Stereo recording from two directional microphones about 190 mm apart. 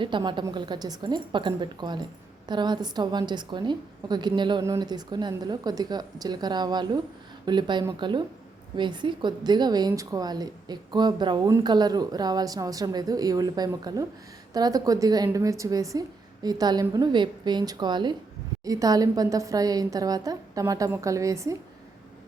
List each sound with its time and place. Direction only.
0.0 s a woman's voice: 25° right (ahead or behind)